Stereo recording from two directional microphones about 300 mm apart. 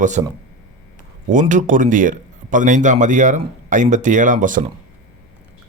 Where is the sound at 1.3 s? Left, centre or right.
Right.